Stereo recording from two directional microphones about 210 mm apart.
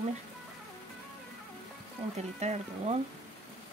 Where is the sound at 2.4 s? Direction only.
30° right (ahead or behind).